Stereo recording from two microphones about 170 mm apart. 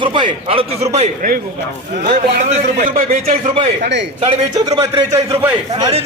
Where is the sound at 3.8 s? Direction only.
90° right.